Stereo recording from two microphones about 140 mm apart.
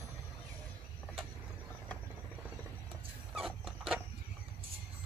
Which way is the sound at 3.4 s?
Centre (ahead or behind).